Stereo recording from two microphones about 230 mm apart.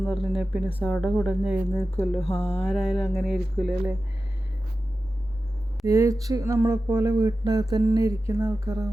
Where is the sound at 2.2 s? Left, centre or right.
Left.